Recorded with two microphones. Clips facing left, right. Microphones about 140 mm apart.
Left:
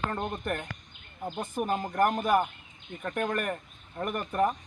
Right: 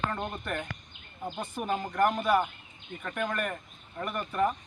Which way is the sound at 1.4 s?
45° left (ahead or behind).